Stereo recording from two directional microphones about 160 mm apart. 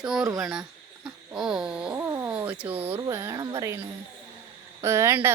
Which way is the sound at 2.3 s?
10° right (ahead or behind).